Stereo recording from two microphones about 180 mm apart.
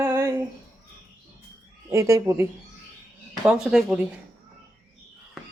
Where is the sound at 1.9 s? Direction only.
15° right (ahead or behind).